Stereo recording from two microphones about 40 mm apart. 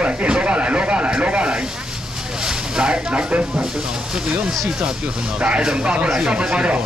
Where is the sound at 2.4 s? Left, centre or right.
Centre.